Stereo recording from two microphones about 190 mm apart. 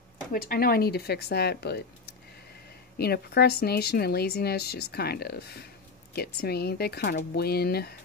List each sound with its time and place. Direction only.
0.3 s speech: 50° left (ahead or behind)
3.0 s speech: 55° left (ahead or behind)